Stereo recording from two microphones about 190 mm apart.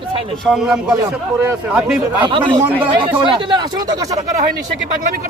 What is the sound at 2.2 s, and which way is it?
Speech, 25° right (ahead or behind).